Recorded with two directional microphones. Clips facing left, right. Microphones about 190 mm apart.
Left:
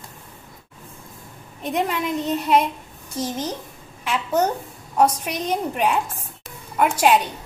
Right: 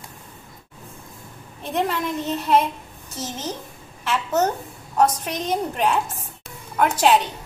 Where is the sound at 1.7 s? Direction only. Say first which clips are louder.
Even; 15° left (ahead or behind).